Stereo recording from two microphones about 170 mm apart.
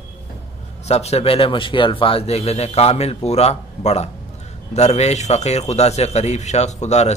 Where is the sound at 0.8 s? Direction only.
40° left (ahead or behind).